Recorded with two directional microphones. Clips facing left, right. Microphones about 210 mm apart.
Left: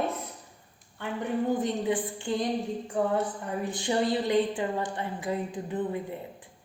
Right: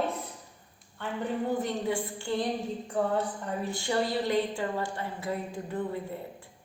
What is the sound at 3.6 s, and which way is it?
A woman's voice, 20° left (ahead or behind).